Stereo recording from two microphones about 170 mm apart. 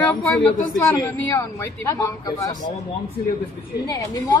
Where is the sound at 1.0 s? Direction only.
15° left (ahead or behind).